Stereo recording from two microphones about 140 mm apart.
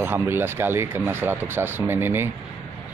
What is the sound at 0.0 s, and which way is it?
Speech, 15° right (ahead or behind).